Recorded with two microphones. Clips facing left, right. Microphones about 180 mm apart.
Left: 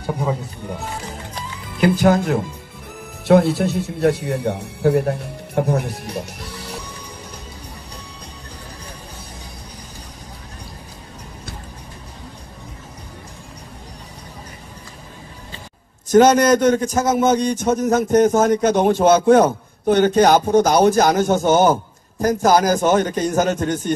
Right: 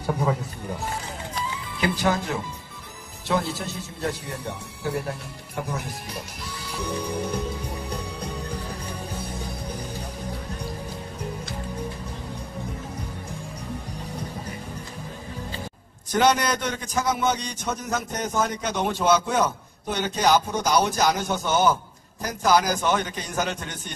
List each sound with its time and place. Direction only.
1.8 s a man's voice: 50° left (ahead or behind)
3.3 s speech: 60° left (ahead or behind)
16.1 s a man's voice: 45° left (ahead or behind)